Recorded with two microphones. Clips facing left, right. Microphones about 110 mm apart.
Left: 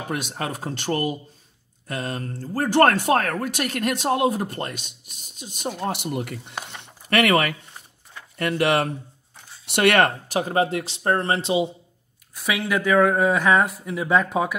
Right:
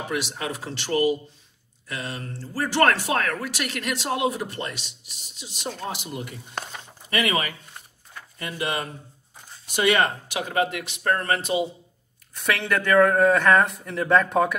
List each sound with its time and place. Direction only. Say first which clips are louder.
0.1 s speech: left 2 dB; 45° left (ahead or behind)
5.9 s speech: left 5 dB; 60° left (ahead or behind)
10.2 s speech: left 3 dB; 40° left (ahead or behind)
12.4 s speech: even; 5° left (ahead or behind)